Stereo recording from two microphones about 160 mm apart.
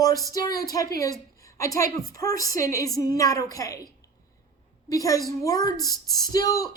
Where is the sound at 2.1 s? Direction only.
20° left (ahead or behind).